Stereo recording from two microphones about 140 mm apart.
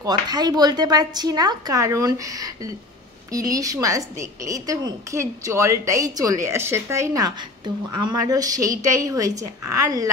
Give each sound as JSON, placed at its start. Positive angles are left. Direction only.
{"t": 0.0, "sound": "a woman's voice", "side_deg": -30}